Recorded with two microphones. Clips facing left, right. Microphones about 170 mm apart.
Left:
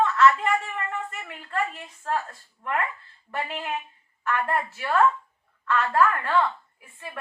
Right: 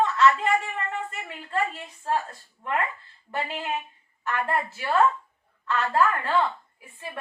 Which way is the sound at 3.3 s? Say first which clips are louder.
Right 1 dB; 30° right (ahead or behind).